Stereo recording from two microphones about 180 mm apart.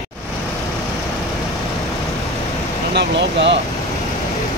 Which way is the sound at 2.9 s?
70° right (ahead or behind).